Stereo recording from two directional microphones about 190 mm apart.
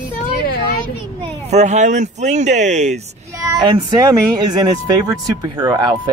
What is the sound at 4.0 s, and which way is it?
Speech, 20° right (ahead or behind).